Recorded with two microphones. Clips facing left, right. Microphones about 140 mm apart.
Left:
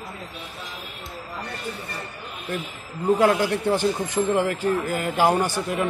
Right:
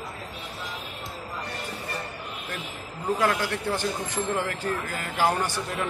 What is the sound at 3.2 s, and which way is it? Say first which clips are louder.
A man's voice: left 5 dB; 20° left (ahead or behind).